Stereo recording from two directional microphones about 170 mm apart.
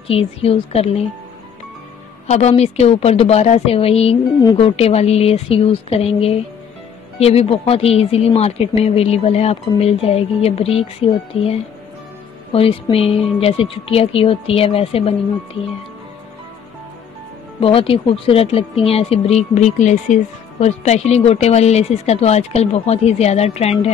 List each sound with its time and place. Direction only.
0.1 s speech: 35° left (ahead or behind)
2.2 s speech: 40° left (ahead or behind)
12.9 s speech: 35° left (ahead or behind)
17.6 s speech: 30° left (ahead or behind)